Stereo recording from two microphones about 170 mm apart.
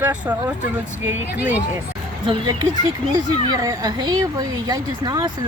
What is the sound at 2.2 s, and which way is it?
Speech, 30° right (ahead or behind).